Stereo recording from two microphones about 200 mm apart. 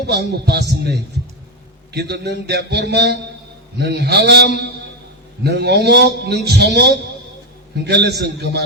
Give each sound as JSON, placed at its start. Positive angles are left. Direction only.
{"t": 0.0, "sound": "a man's voice", "side_deg": -55}